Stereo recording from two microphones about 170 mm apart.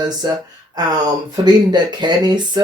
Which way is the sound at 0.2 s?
25° right (ahead or behind).